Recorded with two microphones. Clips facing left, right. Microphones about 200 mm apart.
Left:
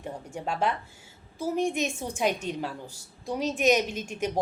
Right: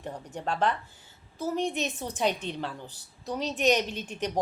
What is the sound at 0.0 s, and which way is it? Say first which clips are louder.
Speech: even; 10° left (ahead or behind).